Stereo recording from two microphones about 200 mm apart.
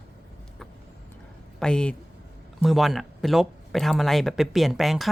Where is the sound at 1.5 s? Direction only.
5° left (ahead or behind).